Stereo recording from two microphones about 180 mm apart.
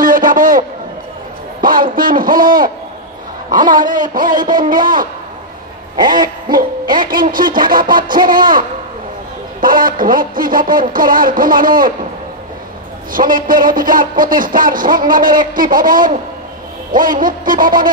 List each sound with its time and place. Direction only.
0.0 s a sound: 50° right (ahead or behind)
1.6 s a man's voice: 50° right (ahead or behind)
6.0 s a man's voice: 50° right (ahead or behind)
13.1 s a man's voice: 50° right (ahead or behind)